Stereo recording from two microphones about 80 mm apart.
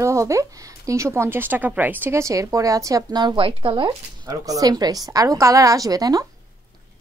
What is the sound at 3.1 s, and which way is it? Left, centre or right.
Speech, right.